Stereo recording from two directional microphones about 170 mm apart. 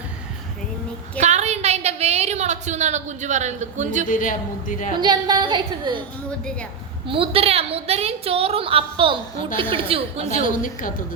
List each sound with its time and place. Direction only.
1.2 s a sound: 40° right (ahead or behind)
4.0 s a woman's voice: 50° left (ahead or behind)
4.9 s a woman's voice: 25° right (ahead or behind)
7.1 s a woman's voice: 35° right (ahead or behind)
10.4 s a woman's voice: 50° left (ahead or behind)